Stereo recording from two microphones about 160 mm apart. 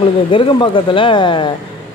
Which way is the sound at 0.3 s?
30° left (ahead or behind).